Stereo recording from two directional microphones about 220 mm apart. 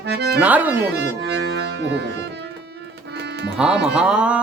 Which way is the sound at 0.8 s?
50° right (ahead or behind).